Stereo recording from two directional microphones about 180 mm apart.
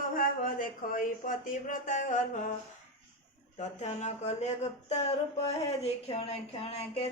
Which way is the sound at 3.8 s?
40° left (ahead or behind).